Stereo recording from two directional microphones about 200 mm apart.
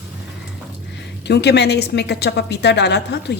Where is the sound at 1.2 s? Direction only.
55° left (ahead or behind).